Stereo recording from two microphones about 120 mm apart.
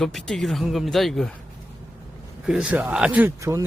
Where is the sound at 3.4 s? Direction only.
25° right (ahead or behind).